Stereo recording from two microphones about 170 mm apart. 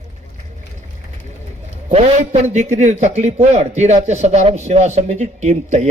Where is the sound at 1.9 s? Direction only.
45° right (ahead or behind).